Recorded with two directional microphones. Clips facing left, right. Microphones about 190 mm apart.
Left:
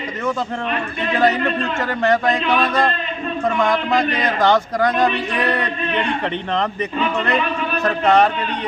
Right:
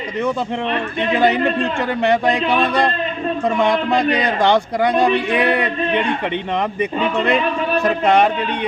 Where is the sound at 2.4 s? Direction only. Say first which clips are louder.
Right 1 dB; 35° right (ahead or behind).